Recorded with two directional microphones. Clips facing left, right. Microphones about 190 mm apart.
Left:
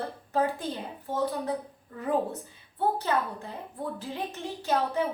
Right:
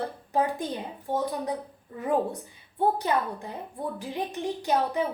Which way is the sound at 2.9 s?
15° right (ahead or behind).